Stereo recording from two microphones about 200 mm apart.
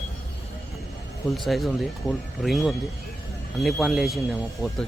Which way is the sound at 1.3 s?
Centre (ahead or behind).